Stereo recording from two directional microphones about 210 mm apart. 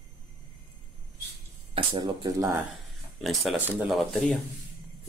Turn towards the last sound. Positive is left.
turn(degrees=0)  # may be behind; listen again after turning